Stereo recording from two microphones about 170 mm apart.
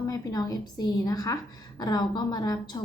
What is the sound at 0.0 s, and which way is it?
A woman's voice, 20° left (ahead or behind).